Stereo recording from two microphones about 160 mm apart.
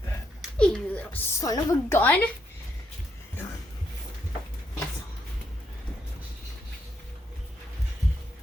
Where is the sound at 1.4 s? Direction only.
25° left (ahead or behind).